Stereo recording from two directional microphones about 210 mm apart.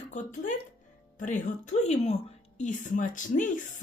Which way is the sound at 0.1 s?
35° left (ahead or behind).